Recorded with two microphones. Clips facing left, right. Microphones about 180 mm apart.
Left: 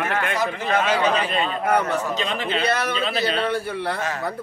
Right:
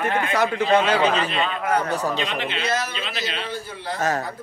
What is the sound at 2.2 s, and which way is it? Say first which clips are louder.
Speech: left 2 dB; 40° left (ahead or behind).